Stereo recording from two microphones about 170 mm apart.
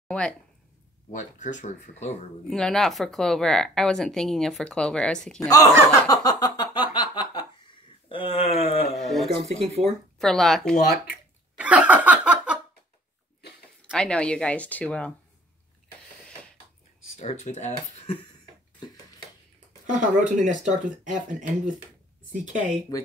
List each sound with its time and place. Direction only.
1.1 s speech: 45° left (ahead or behind)
2.5 s a woman's voice: centre (ahead or behind)
5.5 s a sound: 20° left (ahead or behind)
8.1 s wail: 30° left (ahead or behind)
8.9 s a man's voice: centre (ahead or behind)
11.5 s laughter: 10° right (ahead or behind)
13.8 s speech: 5° left (ahead or behind)
17.2 s speech: 40° left (ahead or behind)
19.9 s speech: 50° right (ahead or behind)